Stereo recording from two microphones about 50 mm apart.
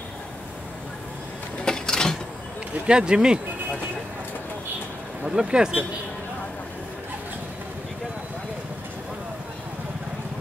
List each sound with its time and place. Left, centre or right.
1.6 s a sound: centre
2.9 s speech: centre
5.2 s speech: centre